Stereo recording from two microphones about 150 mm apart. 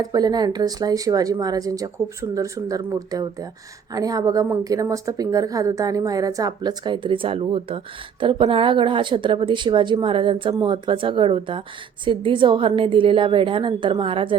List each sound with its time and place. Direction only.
0.0 s a woman's voice: 25° right (ahead or behind)